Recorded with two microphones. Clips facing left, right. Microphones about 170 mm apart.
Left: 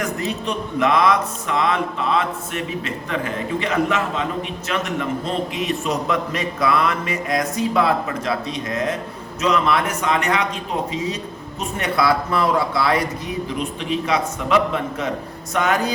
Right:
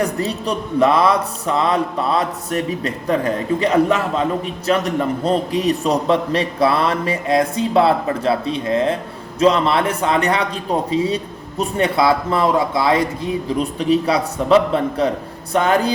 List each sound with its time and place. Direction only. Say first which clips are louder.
0.0 s a man's voice: right 4 dB; 35° right (ahead or behind)
13.6 s speech: right 9 dB; 35° right (ahead or behind)